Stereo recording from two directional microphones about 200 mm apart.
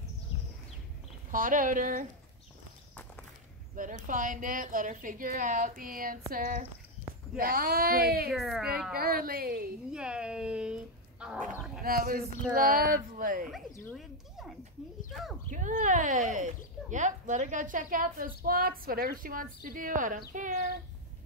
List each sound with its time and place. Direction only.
1.3 s speech: 45° right (ahead or behind)
3.7 s speech: 40° right (ahead or behind)
8.3 s speech: centre (ahead or behind)
8.9 s speech: 50° right (ahead or behind)
9.8 s speech: 5° right (ahead or behind)
11.8 s speech: 50° right (ahead or behind)
13.9 s a sound: centre (ahead or behind)
15.5 s speech: 40° right (ahead or behind)